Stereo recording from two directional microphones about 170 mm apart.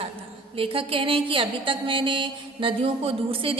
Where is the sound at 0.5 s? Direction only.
35° right (ahead or behind).